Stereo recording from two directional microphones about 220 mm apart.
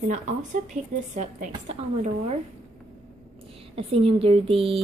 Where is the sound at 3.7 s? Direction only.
25° right (ahead or behind).